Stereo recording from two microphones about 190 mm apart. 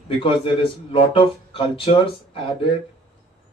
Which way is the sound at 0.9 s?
25° left (ahead or behind).